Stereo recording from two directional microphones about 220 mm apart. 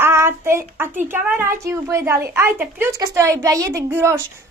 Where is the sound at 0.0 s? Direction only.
10° right (ahead or behind).